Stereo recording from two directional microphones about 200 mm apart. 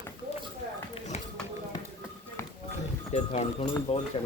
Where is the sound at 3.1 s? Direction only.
30° left (ahead or behind).